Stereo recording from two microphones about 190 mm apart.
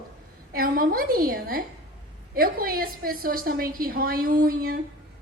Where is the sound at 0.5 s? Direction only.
50° right (ahead or behind).